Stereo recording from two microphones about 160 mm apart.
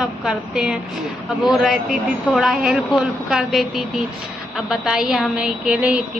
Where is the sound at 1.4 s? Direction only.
Centre (ahead or behind).